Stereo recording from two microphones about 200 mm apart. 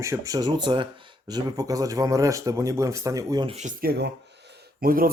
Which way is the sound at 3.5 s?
40° right (ahead or behind).